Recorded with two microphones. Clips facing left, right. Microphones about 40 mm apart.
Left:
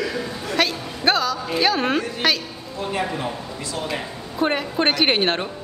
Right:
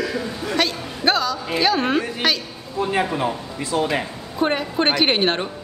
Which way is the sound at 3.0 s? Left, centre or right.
Centre.